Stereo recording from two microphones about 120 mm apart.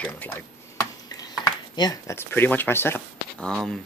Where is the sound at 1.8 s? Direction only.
30° left (ahead or behind).